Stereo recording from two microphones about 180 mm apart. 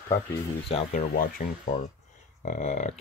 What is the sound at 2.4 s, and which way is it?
Speech, 50° left (ahead or behind).